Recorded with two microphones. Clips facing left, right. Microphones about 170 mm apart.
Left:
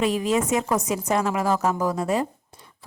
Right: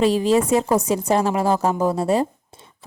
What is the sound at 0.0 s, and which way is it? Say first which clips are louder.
A woman's voice: right 5 dB; 30° right (ahead or behind).